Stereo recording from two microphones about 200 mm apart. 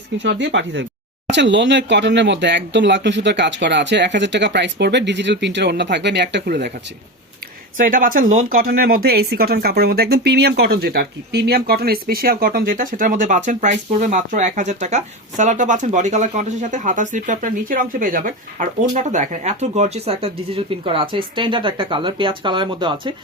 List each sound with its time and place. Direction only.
0.2 s speech: 65° right (ahead or behind)
7.8 s speech: 40° right (ahead or behind); by 23.1 s 25° right (ahead or behind)